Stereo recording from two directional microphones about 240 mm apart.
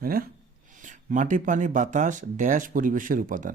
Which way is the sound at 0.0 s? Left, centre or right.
Right.